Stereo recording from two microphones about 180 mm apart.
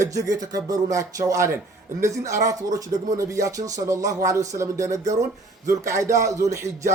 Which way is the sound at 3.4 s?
20° right (ahead or behind).